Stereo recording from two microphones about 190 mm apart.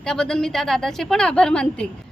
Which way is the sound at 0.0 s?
5° left (ahead or behind).